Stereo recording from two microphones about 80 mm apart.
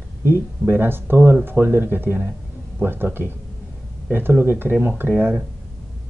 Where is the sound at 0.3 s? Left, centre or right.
Right.